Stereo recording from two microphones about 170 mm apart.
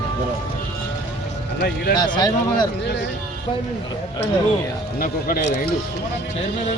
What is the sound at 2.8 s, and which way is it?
Speech, 90° left.